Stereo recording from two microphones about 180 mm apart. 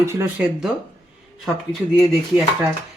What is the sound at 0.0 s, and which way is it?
Speech, 15° right (ahead or behind).